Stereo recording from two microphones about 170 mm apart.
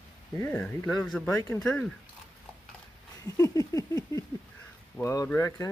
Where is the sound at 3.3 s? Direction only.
20° left (ahead or behind).